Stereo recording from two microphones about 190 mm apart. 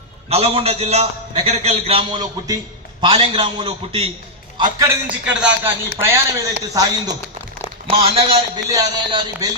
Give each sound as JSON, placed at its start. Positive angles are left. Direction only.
{"t": 0.3, "sound": "a man's voice", "side_deg": -30}
{"t": 5.2, "sound": "a man's voice", "side_deg": -5}